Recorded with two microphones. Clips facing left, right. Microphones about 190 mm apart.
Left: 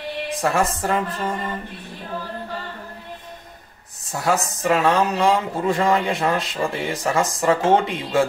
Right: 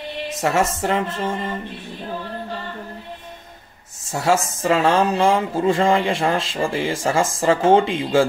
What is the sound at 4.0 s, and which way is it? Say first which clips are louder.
Speech: right 3 dB; 25° right (ahead or behind).